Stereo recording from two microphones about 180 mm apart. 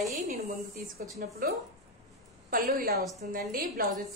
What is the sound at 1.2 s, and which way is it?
Speech, 55° right (ahead or behind).